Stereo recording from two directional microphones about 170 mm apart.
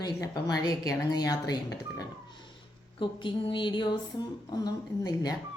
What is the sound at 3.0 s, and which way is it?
A woman's voice, 30° left (ahead or behind).